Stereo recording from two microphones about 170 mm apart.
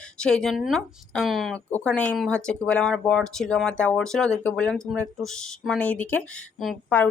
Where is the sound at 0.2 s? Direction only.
5° left (ahead or behind).